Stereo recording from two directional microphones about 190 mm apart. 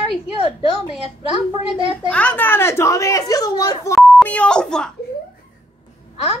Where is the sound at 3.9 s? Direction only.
5° left (ahead or behind).